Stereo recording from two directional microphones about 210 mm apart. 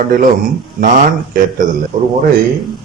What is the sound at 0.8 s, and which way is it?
Speech, 40° right (ahead or behind).